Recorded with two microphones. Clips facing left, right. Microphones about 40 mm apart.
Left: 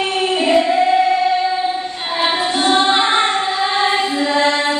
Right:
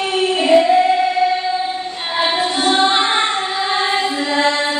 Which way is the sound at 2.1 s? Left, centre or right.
Centre.